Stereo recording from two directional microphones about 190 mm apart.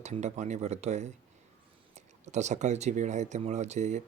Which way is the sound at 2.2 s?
35° right (ahead or behind).